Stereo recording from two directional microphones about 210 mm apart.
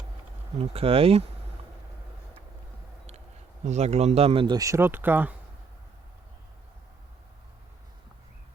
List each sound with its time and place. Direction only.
0.6 s speech: 25° right (ahead or behind)
3.7 s speech: 30° right (ahead or behind); by 5.3 s 10° right (ahead or behind)